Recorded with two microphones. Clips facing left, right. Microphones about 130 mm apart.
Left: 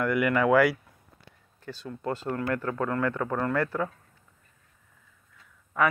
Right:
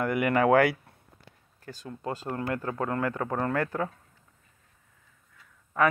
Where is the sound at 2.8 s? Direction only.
30° right (ahead or behind).